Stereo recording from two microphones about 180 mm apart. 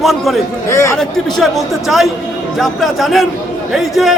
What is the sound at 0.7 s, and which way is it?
Speech, 15° left (ahead or behind).